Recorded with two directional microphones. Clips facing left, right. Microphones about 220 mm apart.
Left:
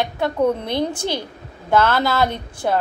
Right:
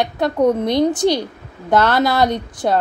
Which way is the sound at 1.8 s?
20° right (ahead or behind).